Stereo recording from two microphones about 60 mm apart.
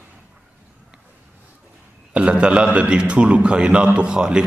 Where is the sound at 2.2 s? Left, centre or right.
Centre.